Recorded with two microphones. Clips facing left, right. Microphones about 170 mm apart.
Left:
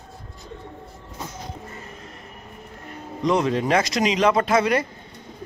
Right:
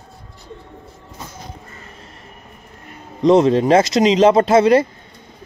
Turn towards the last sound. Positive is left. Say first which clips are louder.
# right 8 dB
turn(degrees=-30)  # may be behind; listen again after turning